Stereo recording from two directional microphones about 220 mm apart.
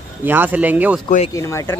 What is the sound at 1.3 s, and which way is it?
Speech, 10° left (ahead or behind).